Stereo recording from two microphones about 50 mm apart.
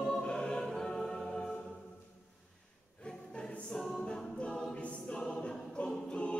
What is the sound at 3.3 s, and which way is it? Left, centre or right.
Choir, centre.